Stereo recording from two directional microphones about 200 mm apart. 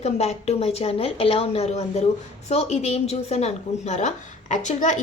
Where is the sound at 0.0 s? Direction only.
30° left (ahead or behind).